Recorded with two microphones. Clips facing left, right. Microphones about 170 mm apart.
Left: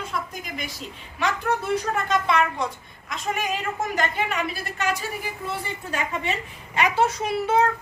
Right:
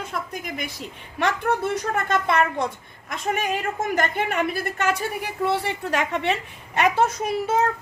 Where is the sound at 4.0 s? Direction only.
55° right (ahead or behind); by 6.3 s 70° right (ahead or behind).